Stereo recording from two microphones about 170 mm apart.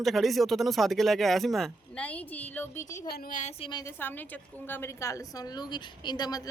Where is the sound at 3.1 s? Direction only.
55° left (ahead or behind); by 3.8 s 35° left (ahead or behind).